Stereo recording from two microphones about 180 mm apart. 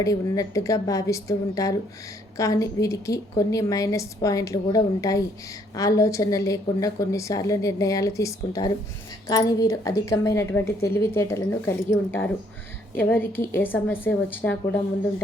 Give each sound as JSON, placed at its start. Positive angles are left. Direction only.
{"t": 0.0, "sound": "a woman's voice", "side_deg": 20}
{"t": 13.0, "sound": "a woman's voice", "side_deg": 10}